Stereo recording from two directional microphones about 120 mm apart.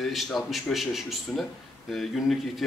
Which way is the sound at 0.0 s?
Centre (ahead or behind).